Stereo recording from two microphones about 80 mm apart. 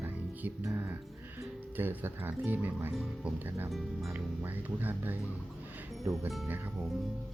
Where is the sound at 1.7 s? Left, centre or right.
Right.